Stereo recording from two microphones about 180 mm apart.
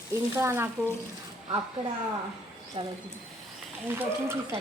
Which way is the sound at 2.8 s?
30° right (ahead or behind).